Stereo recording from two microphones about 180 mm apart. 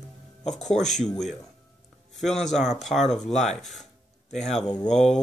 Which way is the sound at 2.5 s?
40° left (ahead or behind).